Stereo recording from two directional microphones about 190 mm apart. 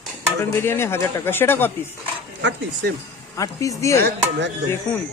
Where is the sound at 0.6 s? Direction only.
10° left (ahead or behind).